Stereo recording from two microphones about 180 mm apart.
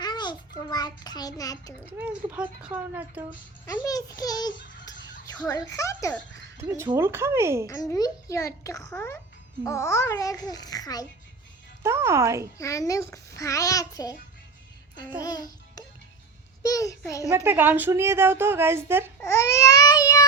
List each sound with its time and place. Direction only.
0.0 s a child's voice: 25° left (ahead or behind)
1.9 s a woman's voice: 10° right (ahead or behind)
3.7 s a child's voice: 20° left (ahead or behind)
6.6 s a woman's voice: 15° right (ahead or behind)
7.7 s a child's voice: 20° left (ahead or behind)
11.8 s a woman's voice: 15° right (ahead or behind)
12.5 s a child's voice: 15° left (ahead or behind)
15.2 s music: 20° left (ahead or behind)
16.6 s a child's voice: 20° left (ahead or behind)
17.2 s a woman's voice: 15° right (ahead or behind)
19.2 s a child's voice: 15° left (ahead or behind)